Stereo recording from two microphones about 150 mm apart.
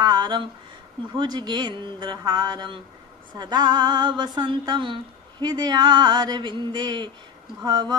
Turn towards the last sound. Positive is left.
turn(degrees=-30)  # may be behind; listen again after turning